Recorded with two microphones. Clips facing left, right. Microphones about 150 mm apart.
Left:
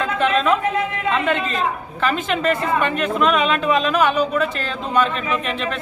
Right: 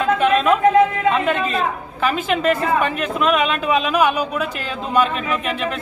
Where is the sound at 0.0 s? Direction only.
5° right (ahead or behind).